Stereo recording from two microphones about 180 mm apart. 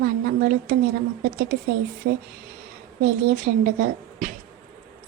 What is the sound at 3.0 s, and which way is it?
A woman's voice, 50° right (ahead or behind).